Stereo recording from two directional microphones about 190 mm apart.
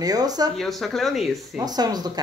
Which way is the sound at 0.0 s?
20° right (ahead or behind).